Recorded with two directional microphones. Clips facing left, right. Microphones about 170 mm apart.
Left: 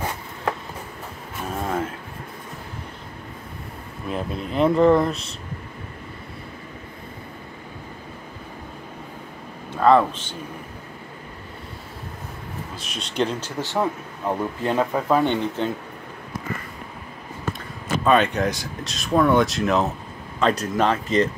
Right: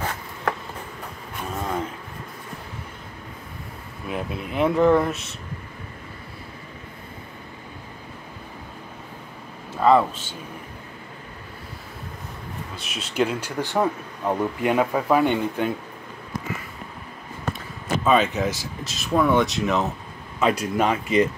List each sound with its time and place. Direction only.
0.0 s writing: 15° left (ahead or behind)
1.5 s a sound: 5° left (ahead or behind)
4.1 s speech: 5° right (ahead or behind)
9.8 s speech: 5° right (ahead or behind)
12.7 s speech: 5° right (ahead or behind)
18.0 s speech: centre (ahead or behind)